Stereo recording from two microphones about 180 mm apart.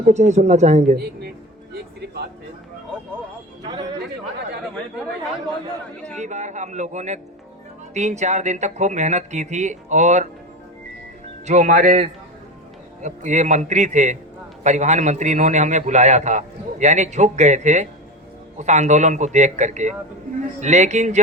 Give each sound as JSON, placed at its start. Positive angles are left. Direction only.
{"t": 0.0, "sound": "a man's voice", "side_deg": -40}
{"t": 6.1, "sound": "a man's voice", "side_deg": -40}
{"t": 11.4, "sound": "a man's voice", "side_deg": -40}